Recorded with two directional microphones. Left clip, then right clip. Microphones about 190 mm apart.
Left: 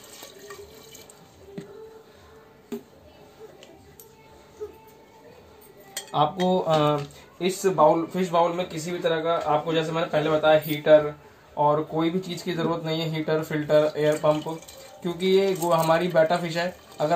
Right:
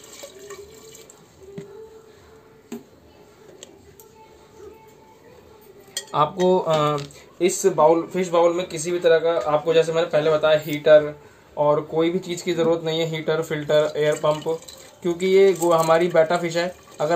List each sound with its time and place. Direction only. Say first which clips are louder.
6.1 s speech: right 4 dB; 25° right (ahead or behind)
7.0 s speech: right 7 dB; 35° right (ahead or behind)
11.5 s speech: right 3 dB; 25° right (ahead or behind)